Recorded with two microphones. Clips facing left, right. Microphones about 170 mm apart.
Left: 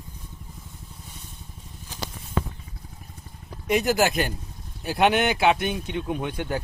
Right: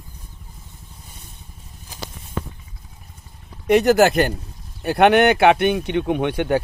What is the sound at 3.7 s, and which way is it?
Speech, 60° right (ahead or behind).